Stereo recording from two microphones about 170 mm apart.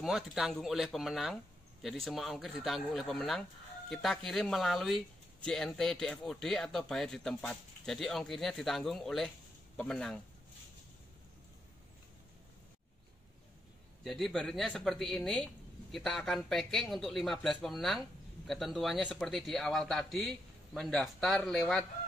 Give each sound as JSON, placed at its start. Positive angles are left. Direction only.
{"t": 0.0, "sound": "speech", "side_deg": 0}
{"t": 14.0, "sound": "speech", "side_deg": 0}